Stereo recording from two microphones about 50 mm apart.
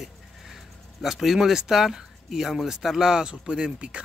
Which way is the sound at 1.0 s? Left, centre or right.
Centre.